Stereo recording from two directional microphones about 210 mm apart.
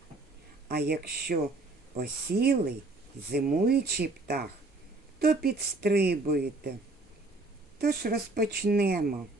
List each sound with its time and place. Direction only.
0.7 s a woman's voice: 50° right (ahead or behind)
7.8 s a woman's voice: 45° right (ahead or behind)